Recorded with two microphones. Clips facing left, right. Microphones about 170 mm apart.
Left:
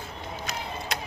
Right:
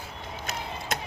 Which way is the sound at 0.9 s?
50° right (ahead or behind).